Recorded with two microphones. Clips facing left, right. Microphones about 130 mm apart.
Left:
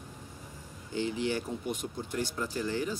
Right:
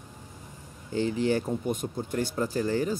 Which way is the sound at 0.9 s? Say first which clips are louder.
Right 5 dB; 40° right (ahead or behind).